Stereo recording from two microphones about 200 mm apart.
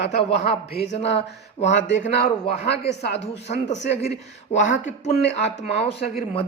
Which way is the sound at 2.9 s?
60° left (ahead or behind).